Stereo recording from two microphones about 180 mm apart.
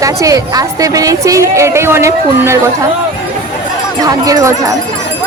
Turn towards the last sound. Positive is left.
turn(degrees=-15)  # may be behind; listen again after turning